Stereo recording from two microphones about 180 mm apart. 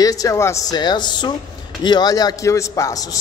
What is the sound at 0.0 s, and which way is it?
A man's voice, 20° left (ahead or behind).